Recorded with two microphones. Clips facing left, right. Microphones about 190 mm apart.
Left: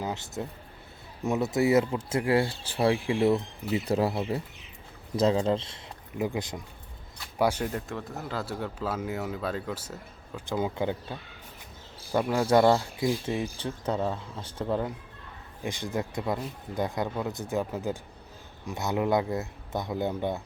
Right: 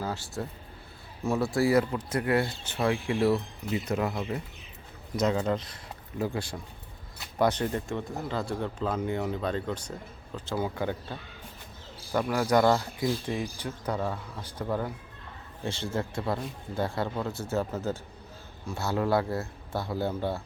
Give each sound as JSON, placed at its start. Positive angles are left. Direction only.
{"t": 0.0, "sound": "a man's voice", "side_deg": 20}